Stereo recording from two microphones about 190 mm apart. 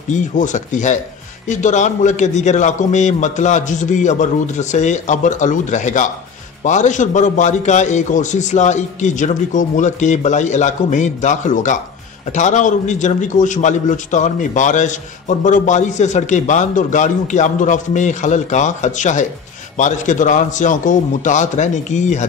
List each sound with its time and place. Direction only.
0.1 s a man's voice: 40° left (ahead or behind)